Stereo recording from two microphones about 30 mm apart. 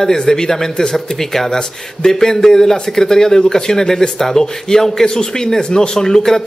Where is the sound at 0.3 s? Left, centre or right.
Centre.